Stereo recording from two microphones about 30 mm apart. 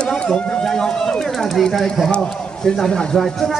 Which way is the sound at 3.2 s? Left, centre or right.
Centre.